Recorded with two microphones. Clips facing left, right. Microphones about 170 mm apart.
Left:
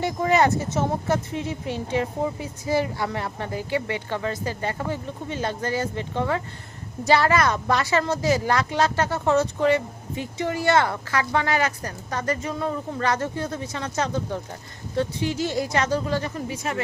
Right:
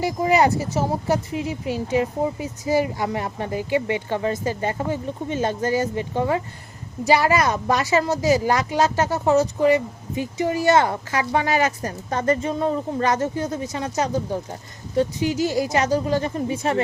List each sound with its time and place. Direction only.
0.0 s speech: 10° right (ahead or behind); by 16.8 s 30° right (ahead or behind)